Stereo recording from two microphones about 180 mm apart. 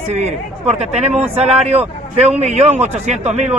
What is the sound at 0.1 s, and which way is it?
Speech, 40° right (ahead or behind).